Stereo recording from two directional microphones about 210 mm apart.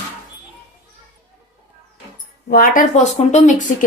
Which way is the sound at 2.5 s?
40° left (ahead or behind).